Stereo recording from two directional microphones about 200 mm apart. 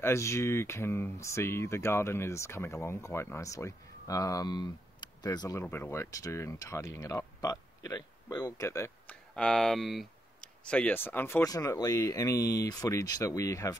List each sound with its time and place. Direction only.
0.0 s speech: 15° left (ahead or behind)